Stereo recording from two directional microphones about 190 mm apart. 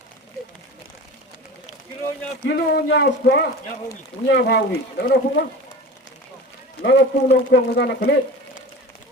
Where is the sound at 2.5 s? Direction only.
65° left (ahead or behind).